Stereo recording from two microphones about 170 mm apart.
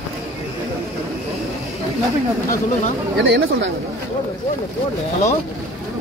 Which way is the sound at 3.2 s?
90° right.